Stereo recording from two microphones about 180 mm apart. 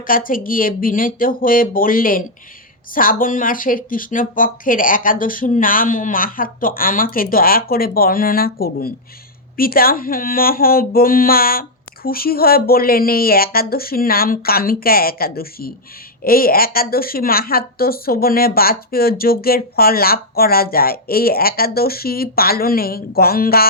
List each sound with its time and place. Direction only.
0.1 s speech: 50° left (ahead or behind)